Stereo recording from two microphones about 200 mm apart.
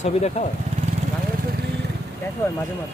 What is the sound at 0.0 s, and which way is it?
Speech, 35° left (ahead or behind).